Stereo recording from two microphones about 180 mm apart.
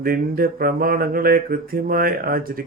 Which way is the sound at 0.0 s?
55° right (ahead or behind).